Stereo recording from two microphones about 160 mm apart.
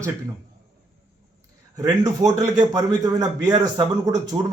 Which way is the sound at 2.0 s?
50° right (ahead or behind).